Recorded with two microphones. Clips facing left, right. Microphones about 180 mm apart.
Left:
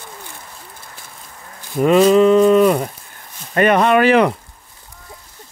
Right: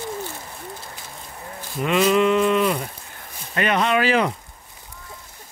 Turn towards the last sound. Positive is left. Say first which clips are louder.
# left 7 dB
turn(degrees=65)  # may be behind; listen again after turning